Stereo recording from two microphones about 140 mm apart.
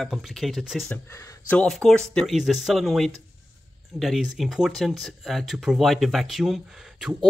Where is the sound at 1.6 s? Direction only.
5° left (ahead or behind).